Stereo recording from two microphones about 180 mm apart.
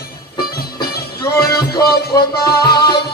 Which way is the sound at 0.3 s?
60° left (ahead or behind).